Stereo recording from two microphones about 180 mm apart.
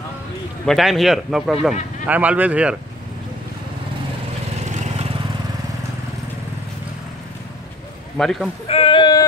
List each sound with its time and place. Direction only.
0.7 s speech: centre (ahead or behind)
4.6 s vehicle: 40° right (ahead or behind)
8.2 s speech: centre (ahead or behind)
8.6 s speech: 30° left (ahead or behind)